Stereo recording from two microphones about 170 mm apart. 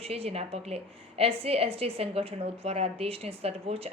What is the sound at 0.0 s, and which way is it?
A woman's voice, 35° right (ahead or behind).